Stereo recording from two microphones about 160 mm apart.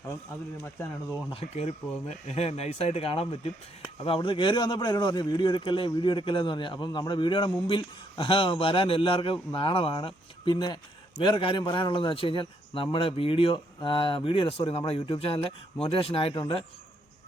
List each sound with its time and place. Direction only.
0.6 s speech: 10° left (ahead or behind)
1.3 s a man's voice: 40° left (ahead or behind)